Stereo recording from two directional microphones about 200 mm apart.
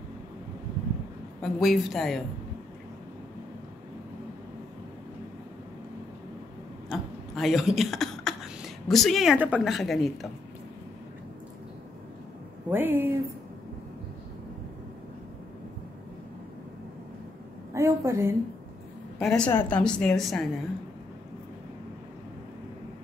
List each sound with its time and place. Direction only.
1.4 s a woman's voice: centre (ahead or behind)
6.9 s speech: centre (ahead or behind)
12.6 s speech: 10° right (ahead or behind)
17.7 s a woman's voice: 15° right (ahead or behind)
19.1 s a woman's voice: 5° left (ahead or behind)